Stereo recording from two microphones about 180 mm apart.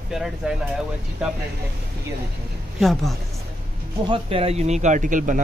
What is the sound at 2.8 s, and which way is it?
Speech, centre (ahead or behind).